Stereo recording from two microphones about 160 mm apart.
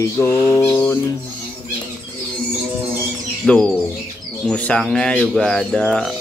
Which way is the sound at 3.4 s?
5° left (ahead or behind).